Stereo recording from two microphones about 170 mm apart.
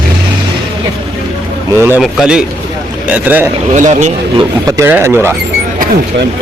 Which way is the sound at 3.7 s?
45° right (ahead or behind).